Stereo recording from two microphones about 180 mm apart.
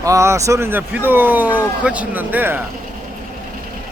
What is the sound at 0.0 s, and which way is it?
Speech, 15° right (ahead or behind).